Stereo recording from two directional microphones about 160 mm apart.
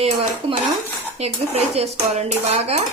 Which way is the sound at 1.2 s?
40° right (ahead or behind).